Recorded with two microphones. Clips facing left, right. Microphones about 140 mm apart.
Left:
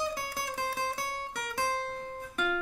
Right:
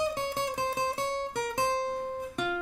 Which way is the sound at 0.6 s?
15° right (ahead or behind).